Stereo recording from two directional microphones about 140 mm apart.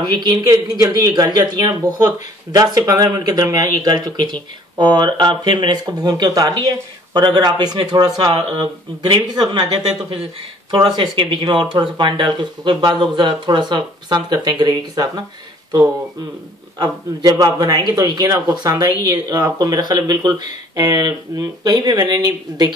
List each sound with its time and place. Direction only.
0.0 s speech: 30° right (ahead or behind)
16.7 s speech: 30° right (ahead or behind)